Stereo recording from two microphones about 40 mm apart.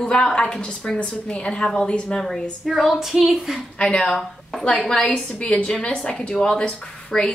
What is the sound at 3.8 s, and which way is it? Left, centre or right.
Speech, left.